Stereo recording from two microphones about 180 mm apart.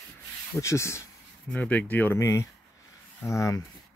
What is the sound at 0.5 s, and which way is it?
Speech, 15° left (ahead or behind).